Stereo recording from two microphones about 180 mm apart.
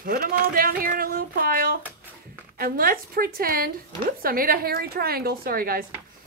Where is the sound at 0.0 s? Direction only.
55° right (ahead or behind).